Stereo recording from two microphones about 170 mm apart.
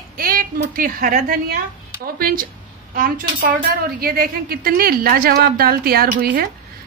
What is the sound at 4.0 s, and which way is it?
A woman's voice, 60° right (ahead or behind).